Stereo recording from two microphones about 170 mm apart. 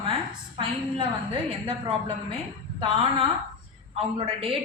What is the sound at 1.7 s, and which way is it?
A woman's voice, 30° right (ahead or behind).